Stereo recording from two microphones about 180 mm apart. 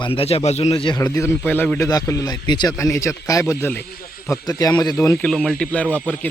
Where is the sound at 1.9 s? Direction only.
20° left (ahead or behind).